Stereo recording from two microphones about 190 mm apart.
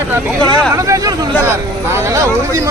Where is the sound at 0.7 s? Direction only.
15° right (ahead or behind).